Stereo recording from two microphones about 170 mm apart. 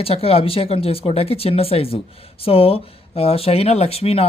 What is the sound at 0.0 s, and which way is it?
Speech, 35° left (ahead or behind).